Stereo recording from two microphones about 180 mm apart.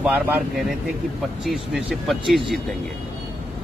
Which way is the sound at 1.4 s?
Centre (ahead or behind).